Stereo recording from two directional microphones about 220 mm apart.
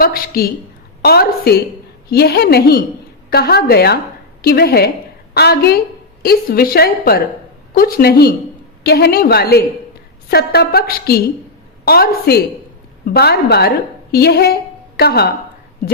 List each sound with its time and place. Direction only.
0.0 s a woman's voice: 45° left (ahead or behind)